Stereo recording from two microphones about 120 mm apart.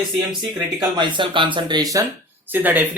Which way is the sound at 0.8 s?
40° right (ahead or behind).